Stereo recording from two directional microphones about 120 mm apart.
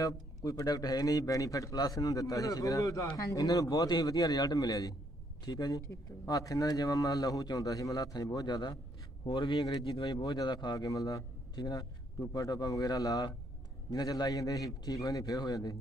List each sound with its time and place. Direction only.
0.0 s speech: 30° left (ahead or behind)
9.2 s speech: 45° left (ahead or behind)
10.1 s speech: 30° left (ahead or behind)